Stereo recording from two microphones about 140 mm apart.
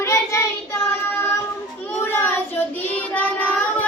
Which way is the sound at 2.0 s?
15° left (ahead or behind).